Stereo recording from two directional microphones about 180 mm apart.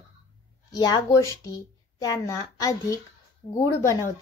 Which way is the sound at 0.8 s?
20° left (ahead or behind).